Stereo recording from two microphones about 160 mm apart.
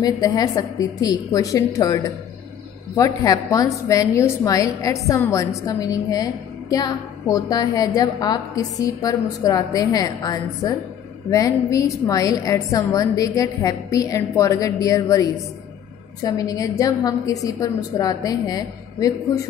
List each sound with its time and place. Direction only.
0.0 s a woman's voice: 25° left (ahead or behind)